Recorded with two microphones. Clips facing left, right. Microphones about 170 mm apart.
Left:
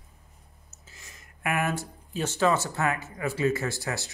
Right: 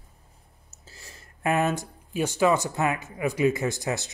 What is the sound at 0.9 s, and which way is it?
Speech, 30° right (ahead or behind).